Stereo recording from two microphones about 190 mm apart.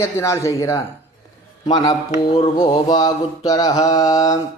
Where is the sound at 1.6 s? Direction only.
20° left (ahead or behind).